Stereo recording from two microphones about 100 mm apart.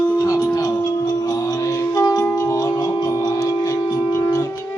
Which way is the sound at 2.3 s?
35° left (ahead or behind).